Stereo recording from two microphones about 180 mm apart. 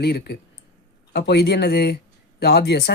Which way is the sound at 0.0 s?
65° left (ahead or behind).